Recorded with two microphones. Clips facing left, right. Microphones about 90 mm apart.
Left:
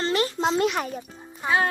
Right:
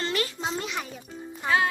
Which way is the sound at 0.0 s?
35° left (ahead or behind).